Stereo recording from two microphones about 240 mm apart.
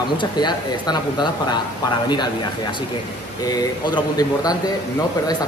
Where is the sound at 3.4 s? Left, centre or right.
Centre.